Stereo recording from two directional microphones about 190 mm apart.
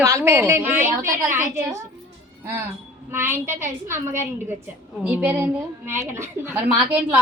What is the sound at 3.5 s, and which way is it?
A woman's voice, 15° right (ahead or behind).